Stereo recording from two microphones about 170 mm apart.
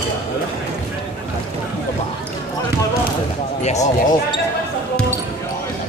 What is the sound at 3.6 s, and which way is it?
Speech, 45° left (ahead or behind).